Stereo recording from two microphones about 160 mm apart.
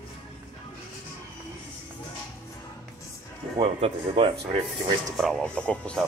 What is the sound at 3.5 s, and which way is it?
Speech, 35° right (ahead or behind).